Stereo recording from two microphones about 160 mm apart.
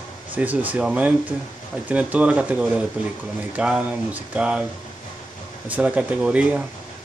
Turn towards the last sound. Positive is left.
turn(degrees=-5)  # may be behind; listen again after turning